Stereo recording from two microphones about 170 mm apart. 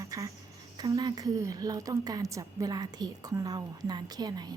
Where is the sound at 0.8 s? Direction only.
20° right (ahead or behind).